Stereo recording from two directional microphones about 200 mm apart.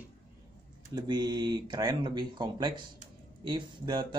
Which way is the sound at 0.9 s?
20° right (ahead or behind).